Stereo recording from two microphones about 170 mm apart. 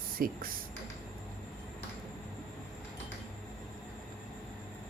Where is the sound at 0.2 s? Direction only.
55° right (ahead or behind).